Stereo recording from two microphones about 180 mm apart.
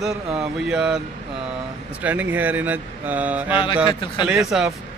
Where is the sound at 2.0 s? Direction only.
10° right (ahead or behind).